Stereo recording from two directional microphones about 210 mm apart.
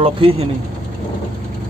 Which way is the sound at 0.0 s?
25° right (ahead or behind).